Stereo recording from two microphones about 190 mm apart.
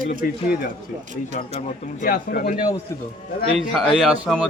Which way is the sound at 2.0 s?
50° left (ahead or behind).